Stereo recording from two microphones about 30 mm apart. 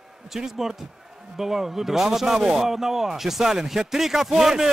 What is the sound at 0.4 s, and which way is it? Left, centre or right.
Speech, centre.